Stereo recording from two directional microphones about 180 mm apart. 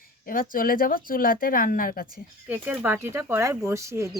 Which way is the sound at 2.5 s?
10° right (ahead or behind).